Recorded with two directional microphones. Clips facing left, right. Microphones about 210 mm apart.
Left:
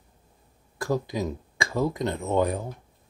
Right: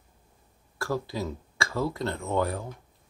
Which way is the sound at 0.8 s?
15° left (ahead or behind).